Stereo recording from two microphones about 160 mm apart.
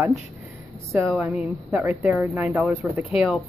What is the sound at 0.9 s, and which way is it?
A woman's voice, 5° right (ahead or behind).